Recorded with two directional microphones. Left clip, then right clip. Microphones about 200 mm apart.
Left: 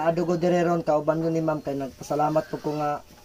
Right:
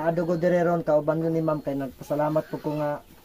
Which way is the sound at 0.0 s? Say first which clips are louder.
Left 1 dB; 5° left (ahead or behind).